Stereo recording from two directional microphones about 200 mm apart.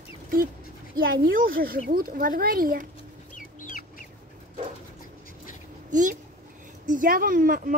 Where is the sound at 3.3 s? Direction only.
40° left (ahead or behind).